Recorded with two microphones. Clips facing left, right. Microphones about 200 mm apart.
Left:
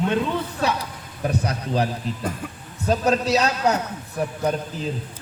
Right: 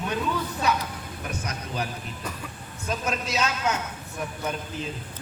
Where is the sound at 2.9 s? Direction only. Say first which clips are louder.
Left 10 dB; 35° left (ahead or behind).